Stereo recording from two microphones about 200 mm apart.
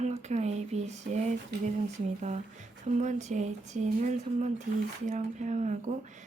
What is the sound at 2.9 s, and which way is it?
Speech, 35° right (ahead or behind).